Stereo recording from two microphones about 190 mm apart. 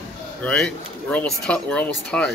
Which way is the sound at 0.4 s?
5° left (ahead or behind).